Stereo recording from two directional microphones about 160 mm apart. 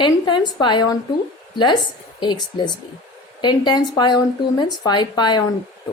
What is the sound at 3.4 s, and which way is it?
A woman's voice, 25° left (ahead or behind).